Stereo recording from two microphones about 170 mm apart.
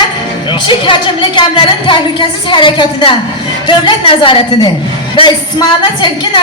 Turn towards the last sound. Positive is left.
turn(degrees=25)  # may be behind; listen again after turning